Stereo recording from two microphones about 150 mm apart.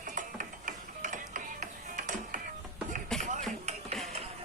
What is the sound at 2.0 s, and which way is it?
Music, 60° right (ahead or behind).